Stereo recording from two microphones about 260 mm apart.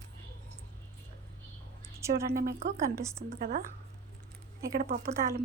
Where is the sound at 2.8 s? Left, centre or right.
Centre.